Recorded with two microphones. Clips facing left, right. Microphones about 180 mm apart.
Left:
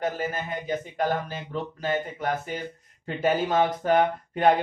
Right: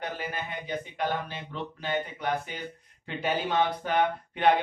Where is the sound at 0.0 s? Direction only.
45° left (ahead or behind).